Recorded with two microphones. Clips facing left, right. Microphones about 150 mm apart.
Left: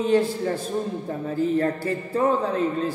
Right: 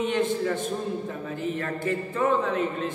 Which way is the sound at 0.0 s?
35° left (ahead or behind).